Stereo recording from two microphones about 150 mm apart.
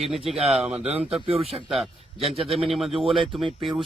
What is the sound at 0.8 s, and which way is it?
Speech, 40° right (ahead or behind).